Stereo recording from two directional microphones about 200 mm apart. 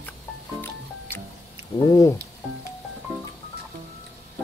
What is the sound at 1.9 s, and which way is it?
Speech, 15° left (ahead or behind).